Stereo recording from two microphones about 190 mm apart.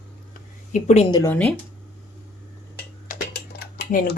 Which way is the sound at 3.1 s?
50° left (ahead or behind).